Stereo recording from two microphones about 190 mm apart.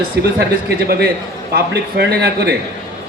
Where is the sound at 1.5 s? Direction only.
55° right (ahead or behind).